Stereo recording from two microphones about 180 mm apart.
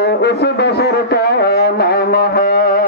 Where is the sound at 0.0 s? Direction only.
70° left (ahead or behind).